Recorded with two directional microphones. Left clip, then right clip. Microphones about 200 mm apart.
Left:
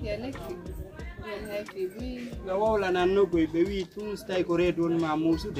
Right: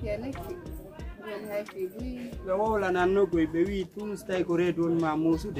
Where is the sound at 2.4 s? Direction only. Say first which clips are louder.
Left 1 dB; 10° right (ahead or behind).